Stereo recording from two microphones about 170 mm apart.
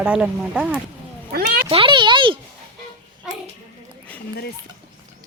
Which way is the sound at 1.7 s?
30° right (ahead or behind).